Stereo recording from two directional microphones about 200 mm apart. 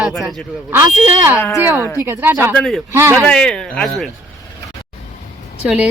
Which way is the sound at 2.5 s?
5° left (ahead or behind).